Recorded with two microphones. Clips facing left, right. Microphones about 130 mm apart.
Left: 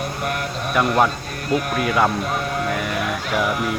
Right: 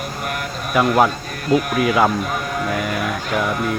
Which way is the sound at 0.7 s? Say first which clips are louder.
Right 3 dB; 5° right (ahead or behind).